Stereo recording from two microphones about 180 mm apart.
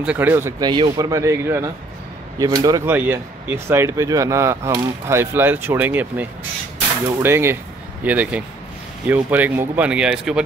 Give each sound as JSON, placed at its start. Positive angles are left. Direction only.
{"t": 0.0, "sound": "speech", "side_deg": -10}